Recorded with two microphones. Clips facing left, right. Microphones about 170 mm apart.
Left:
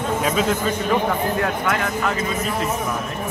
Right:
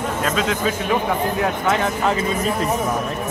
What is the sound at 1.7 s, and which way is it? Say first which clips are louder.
Speech: right 3 dB; 25° right (ahead or behind).